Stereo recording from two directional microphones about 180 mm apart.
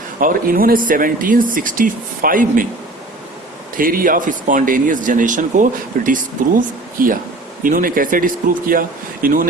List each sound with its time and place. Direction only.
0.2 s speech: 50° right (ahead or behind)
3.8 s speech: 50° right (ahead or behind)